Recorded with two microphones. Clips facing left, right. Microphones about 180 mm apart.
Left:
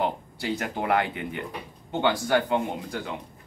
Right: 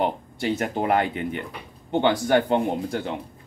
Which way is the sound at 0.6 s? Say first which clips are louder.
Right 3 dB; 35° right (ahead or behind).